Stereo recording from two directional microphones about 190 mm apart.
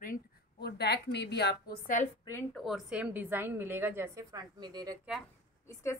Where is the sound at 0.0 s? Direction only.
50° left (ahead or behind).